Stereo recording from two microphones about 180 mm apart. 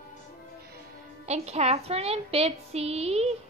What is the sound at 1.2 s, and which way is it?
A woman's voice, 35° right (ahead or behind).